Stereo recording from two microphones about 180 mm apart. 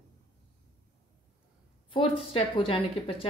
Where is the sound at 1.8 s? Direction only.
30° left (ahead or behind).